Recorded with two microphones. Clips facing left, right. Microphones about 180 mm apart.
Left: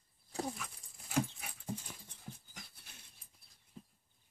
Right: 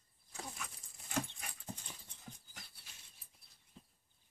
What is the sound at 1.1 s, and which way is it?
Dog, 10° left (ahead or behind).